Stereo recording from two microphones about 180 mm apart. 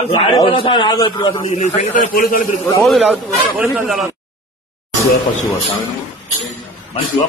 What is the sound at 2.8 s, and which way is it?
A man's voice, centre (ahead or behind).